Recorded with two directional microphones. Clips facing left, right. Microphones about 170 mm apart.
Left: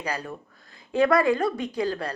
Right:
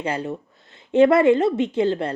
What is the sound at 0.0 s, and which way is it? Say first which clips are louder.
A woman's voice: right 6 dB; 25° right (ahead or behind).